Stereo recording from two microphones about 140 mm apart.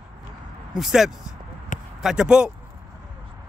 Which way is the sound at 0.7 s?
5° right (ahead or behind).